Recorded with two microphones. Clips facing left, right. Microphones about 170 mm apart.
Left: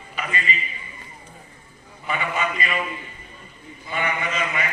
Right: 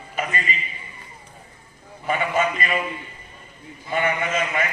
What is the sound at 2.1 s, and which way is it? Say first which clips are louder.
Speech: right 4 dB; 45° right (ahead or behind).